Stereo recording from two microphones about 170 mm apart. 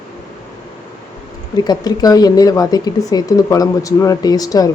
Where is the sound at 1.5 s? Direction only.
25° left (ahead or behind).